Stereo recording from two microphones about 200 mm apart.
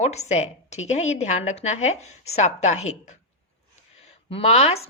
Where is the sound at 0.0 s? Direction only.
35° left (ahead or behind).